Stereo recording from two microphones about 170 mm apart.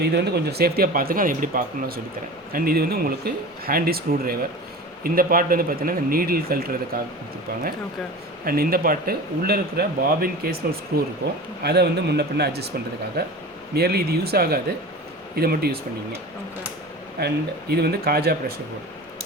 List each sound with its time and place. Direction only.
0.0 s speech: 75° right (ahead or behind)
17.2 s speech: 70° right (ahead or behind)